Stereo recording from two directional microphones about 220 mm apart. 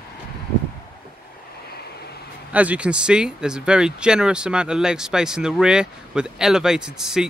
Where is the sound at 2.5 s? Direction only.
5° right (ahead or behind).